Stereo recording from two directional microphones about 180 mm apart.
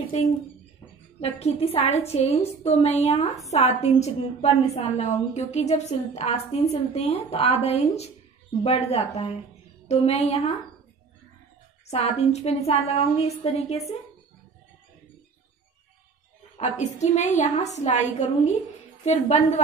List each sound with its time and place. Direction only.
1.2 s a woman's voice: 35° left (ahead or behind)
11.9 s a woman's voice: 35° left (ahead or behind)
16.5 s a woman's voice: 40° left (ahead or behind)